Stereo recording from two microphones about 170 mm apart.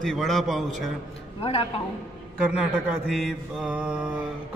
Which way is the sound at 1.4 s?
35° left (ahead or behind).